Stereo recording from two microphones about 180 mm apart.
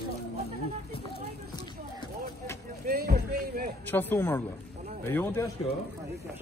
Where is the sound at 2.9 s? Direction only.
60° right (ahead or behind).